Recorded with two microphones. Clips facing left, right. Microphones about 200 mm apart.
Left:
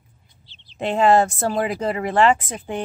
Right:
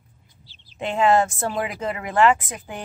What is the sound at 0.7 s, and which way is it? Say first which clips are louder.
Speech: left 2 dB; 35° left (ahead or behind).